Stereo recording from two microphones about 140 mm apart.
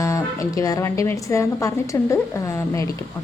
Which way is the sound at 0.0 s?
25° left (ahead or behind).